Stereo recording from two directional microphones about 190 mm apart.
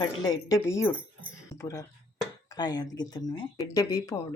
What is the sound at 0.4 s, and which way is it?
Speech, 15° left (ahead or behind).